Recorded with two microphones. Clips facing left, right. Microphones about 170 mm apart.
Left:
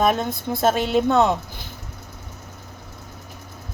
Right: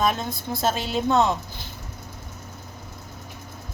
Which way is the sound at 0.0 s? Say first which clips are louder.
Left 4 dB; 55° left (ahead or behind).